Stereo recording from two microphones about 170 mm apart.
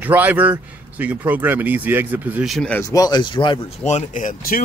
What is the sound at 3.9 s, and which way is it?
Speech, 45° left (ahead or behind).